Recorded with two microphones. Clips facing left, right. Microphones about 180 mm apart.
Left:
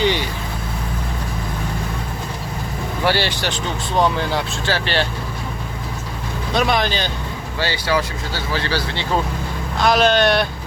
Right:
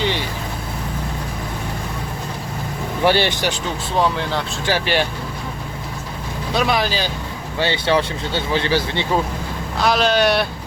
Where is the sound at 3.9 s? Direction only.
Centre (ahead or behind).